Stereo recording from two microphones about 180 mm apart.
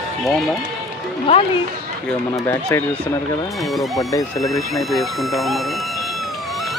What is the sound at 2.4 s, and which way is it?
Speech, 15° left (ahead or behind).